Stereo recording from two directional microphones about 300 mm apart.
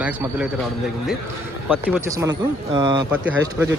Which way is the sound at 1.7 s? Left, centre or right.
Centre.